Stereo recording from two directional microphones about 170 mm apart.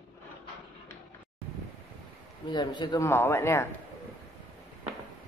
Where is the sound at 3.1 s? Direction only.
15° left (ahead or behind).